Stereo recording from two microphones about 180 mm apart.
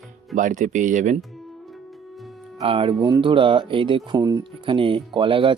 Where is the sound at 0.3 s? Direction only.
45° right (ahead or behind).